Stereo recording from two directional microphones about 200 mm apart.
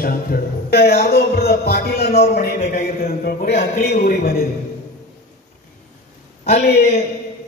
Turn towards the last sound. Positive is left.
turn(degrees=35)  # may be behind; listen again after turning